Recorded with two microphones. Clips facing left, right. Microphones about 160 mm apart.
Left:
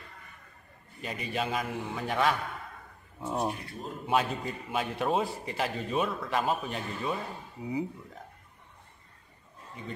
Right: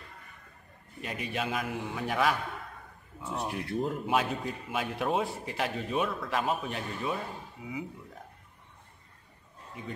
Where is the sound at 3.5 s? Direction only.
90° right.